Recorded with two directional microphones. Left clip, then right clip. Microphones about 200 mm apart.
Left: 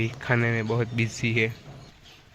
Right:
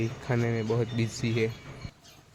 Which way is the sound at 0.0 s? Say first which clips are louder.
Left 5 dB; 5° left (ahead or behind).